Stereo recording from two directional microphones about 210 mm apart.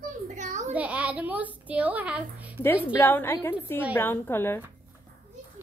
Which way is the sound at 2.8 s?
10° left (ahead or behind).